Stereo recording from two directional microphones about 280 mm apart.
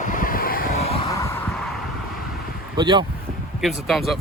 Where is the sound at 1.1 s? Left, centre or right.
Centre.